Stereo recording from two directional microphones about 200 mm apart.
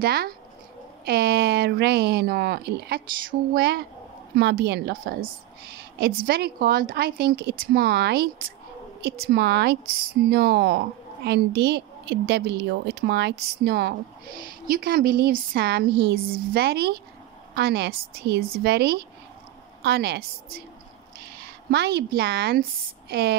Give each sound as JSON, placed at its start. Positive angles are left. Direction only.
{"t": 0.0, "sound": "a woman's voice", "side_deg": -50}
{"t": 21.6, "sound": "speech", "side_deg": -55}